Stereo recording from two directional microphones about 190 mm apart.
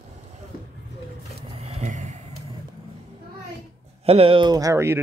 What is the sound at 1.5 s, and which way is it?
Vehicle, 30° right (ahead or behind).